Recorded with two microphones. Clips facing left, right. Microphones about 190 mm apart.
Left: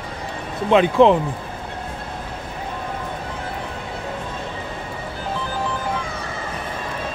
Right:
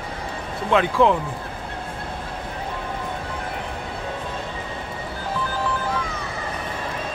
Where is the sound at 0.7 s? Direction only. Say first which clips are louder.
Left 4 dB; 20° left (ahead or behind).